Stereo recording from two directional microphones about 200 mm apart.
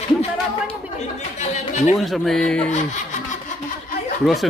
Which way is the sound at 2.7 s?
35° left (ahead or behind).